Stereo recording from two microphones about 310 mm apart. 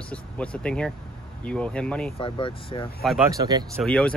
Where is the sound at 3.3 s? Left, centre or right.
Centre.